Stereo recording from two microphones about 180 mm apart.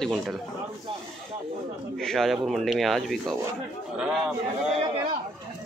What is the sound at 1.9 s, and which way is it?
A man's voice, centre (ahead or behind).